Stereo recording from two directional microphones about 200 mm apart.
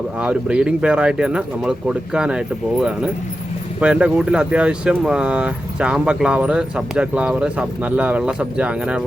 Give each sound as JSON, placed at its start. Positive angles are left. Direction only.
{"t": 0.2, "sound": "speech", "side_deg": -5}